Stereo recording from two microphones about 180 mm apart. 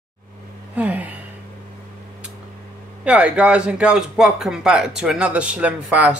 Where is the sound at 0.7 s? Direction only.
10° right (ahead or behind).